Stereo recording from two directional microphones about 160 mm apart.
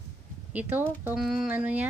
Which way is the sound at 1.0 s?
Centre (ahead or behind).